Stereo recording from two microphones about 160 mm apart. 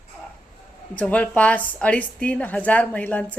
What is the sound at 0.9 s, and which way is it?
A woman's voice, 10° left (ahead or behind).